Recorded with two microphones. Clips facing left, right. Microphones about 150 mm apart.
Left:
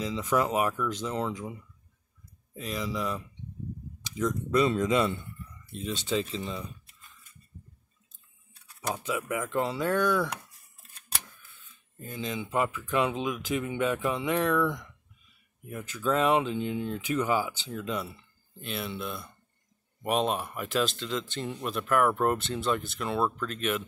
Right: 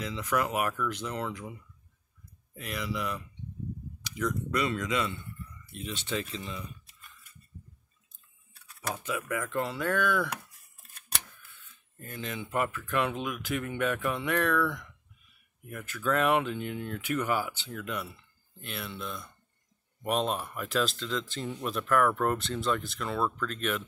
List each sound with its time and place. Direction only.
0.2 s speech: 25° left (ahead or behind)
2.5 s speech: 25° left (ahead or behind)
4.2 s speech: 25° left (ahead or behind)
8.8 s speech: 15° left (ahead or behind)
12.0 s speech: 15° left (ahead or behind)
22.4 s speech: 5° left (ahead or behind)